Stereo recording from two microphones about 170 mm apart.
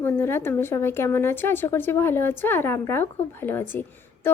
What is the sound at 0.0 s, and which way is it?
A woman's voice, 15° left (ahead or behind).